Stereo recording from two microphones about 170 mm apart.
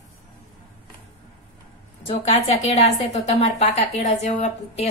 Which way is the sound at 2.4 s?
35° left (ahead or behind).